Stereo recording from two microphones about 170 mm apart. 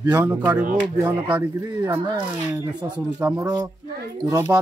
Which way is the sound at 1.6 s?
20° right (ahead or behind).